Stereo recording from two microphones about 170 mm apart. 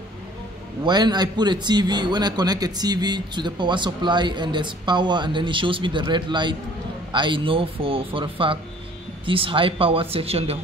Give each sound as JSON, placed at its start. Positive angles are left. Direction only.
{"t": 0.8, "sound": "a man's voice", "side_deg": -25}